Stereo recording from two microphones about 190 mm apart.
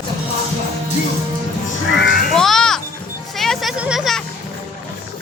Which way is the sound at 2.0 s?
65° left (ahead or behind).